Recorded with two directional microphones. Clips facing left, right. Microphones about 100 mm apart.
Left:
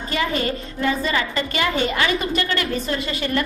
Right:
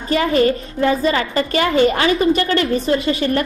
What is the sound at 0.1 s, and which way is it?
A woman's voice, 35° right (ahead or behind).